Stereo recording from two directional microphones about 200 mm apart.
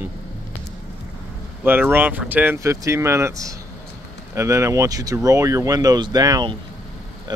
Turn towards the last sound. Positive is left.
turn(degrees=-20)  # may be behind; listen again after turning